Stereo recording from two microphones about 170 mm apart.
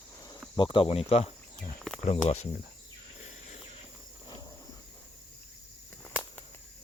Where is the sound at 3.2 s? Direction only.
40° left (ahead or behind).